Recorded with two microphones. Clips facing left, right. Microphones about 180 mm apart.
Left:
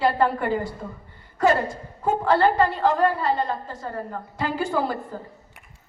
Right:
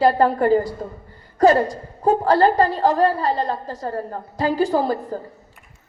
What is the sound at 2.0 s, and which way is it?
A woman's voice, 35° right (ahead or behind).